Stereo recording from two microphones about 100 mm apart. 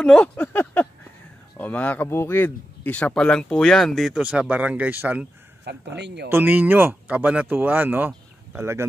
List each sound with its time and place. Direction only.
0.0 s a sound: 10° left (ahead or behind)
1.6 s speech: 15° left (ahead or behind)
4.2 s speech: 15° right (ahead or behind)